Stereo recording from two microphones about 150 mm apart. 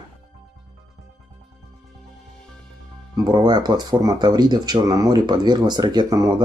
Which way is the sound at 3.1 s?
30° right (ahead or behind).